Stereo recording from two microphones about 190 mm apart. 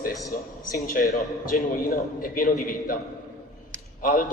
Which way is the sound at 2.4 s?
45° left (ahead or behind).